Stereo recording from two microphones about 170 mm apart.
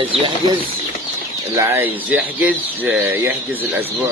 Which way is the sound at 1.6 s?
15° right (ahead or behind).